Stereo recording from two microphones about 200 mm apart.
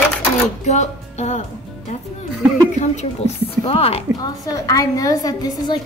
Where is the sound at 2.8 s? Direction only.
35° left (ahead or behind).